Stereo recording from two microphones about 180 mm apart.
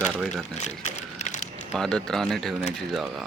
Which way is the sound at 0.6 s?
40° left (ahead or behind).